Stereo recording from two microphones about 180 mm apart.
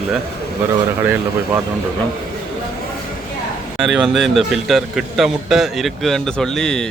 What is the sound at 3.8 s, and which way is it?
A man's voice, centre (ahead or behind).